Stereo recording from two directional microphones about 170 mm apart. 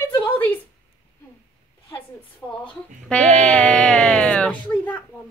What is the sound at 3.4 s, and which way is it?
Speech, 5° left (ahead or behind).